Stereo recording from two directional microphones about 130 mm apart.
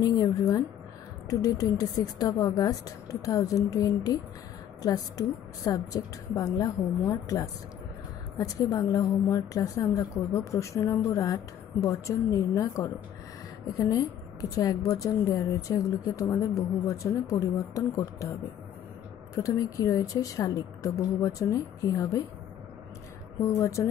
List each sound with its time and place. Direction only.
0.0 s a woman's voice: 30° left (ahead or behind)
8.4 s a woman's voice: 25° left (ahead or behind)
19.3 s a woman's voice: 25° left (ahead or behind)
23.4 s a woman's voice: 25° left (ahead or behind)